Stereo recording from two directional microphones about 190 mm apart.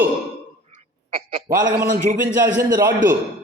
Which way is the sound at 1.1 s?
30° right (ahead or behind).